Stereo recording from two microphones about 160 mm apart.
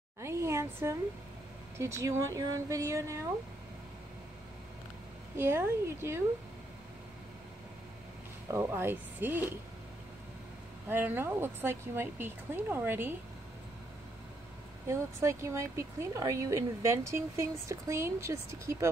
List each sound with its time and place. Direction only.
0.2 s a sound: 15° right (ahead or behind)
1.8 s speech: 15° right (ahead or behind)
5.3 s speech: 15° right (ahead or behind)
8.5 s speech: 15° right (ahead or behind)
10.9 s speech: 15° right (ahead or behind)
14.9 s speech: 15° right (ahead or behind)